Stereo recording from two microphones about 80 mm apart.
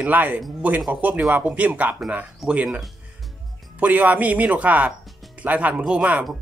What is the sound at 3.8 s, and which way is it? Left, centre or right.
Speech, right.